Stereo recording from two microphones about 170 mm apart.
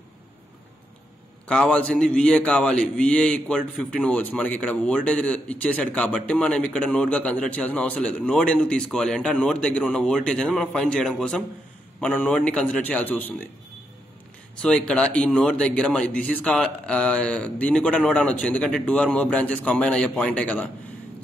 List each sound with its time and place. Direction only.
1.5 s a man's voice: 5° left (ahead or behind)
14.6 s a man's voice: 5° left (ahead or behind)